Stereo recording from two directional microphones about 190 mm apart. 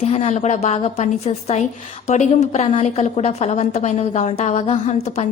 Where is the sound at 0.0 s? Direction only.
35° left (ahead or behind).